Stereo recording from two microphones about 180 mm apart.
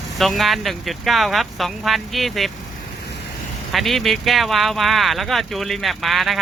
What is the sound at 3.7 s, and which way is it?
Speech, centre (ahead or behind).